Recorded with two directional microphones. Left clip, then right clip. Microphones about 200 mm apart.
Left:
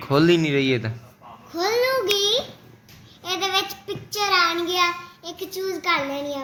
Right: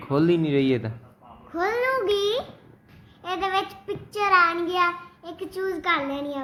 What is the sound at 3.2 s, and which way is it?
Child singing, 5° left (ahead or behind).